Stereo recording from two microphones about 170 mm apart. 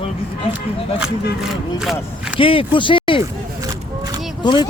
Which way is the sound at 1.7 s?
5° right (ahead or behind).